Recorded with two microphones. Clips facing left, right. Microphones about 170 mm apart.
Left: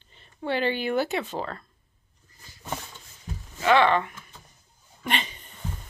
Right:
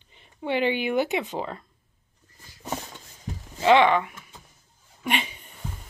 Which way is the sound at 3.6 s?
20° right (ahead or behind).